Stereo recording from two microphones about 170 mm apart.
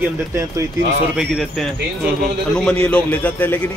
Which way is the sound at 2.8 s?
10° left (ahead or behind).